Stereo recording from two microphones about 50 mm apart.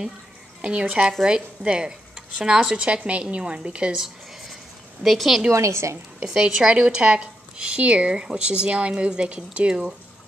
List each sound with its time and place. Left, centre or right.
0.6 s a woman's voice: right
3.9 s a sound: centre
5.0 s speech: centre
5.5 s a woman's voice: right
6.2 s a woman's voice: centre